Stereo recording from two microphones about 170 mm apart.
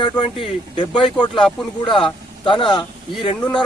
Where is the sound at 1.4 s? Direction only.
5° left (ahead or behind).